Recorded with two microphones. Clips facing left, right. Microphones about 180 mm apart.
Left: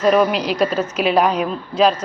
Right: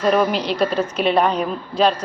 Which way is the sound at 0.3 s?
30° right (ahead or behind).